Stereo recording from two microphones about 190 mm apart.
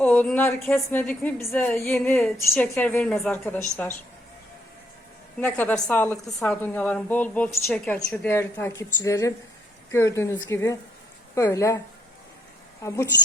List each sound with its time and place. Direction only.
0.0 s a woman's voice: 10° left (ahead or behind)
5.4 s a woman's voice: 10° left (ahead or behind)